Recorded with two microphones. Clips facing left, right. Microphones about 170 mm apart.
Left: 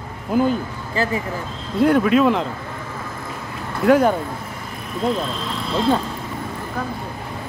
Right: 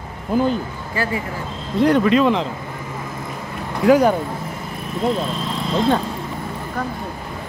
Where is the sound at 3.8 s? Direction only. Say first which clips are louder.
Right 1 dB; centre (ahead or behind).